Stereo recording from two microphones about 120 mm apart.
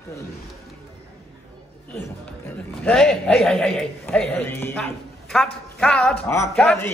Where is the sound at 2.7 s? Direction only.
5° left (ahead or behind).